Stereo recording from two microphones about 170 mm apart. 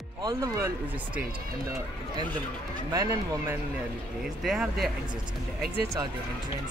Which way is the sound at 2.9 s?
15° right (ahead or behind).